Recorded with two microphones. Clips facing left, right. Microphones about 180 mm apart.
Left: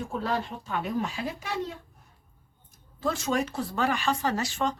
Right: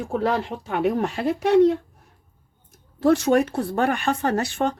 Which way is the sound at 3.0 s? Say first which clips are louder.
Right 10 dB; 65° right (ahead or behind).